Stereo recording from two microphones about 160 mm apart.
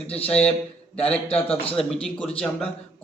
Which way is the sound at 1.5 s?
35° left (ahead or behind).